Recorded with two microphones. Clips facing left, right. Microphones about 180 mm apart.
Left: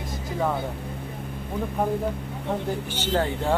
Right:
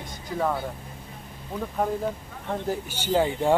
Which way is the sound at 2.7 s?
10° right (ahead or behind).